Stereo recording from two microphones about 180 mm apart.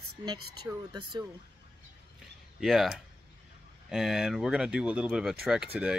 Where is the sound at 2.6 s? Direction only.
Centre (ahead or behind).